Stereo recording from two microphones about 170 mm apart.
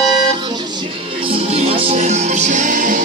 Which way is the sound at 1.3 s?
35° right (ahead or behind).